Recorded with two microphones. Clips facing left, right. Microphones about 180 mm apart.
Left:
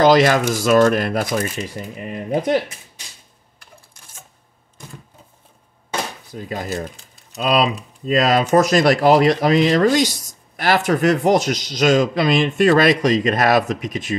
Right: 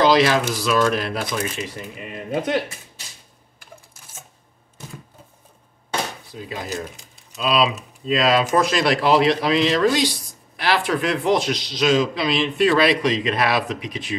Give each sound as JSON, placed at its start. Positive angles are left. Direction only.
{"t": 0.0, "sound": "speech", "side_deg": 50}
{"t": 6.3, "sound": "speech", "side_deg": 50}